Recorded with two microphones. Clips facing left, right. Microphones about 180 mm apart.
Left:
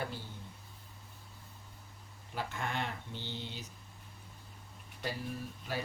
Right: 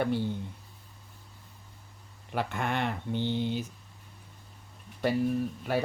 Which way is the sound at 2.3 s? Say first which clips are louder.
Right 7 dB; 65° right (ahead or behind).